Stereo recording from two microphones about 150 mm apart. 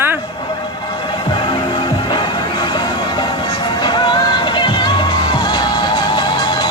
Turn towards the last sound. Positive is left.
turn(degrees=30)  # may be behind; listen again after turning